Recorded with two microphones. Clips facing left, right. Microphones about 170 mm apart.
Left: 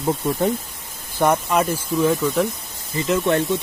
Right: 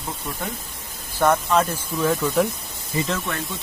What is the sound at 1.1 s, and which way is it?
Speech, 15° left (ahead or behind).